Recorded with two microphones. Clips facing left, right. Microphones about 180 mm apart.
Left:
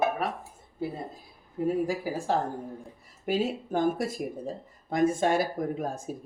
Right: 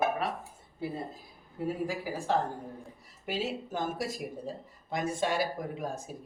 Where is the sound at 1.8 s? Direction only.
45° left (ahead or behind).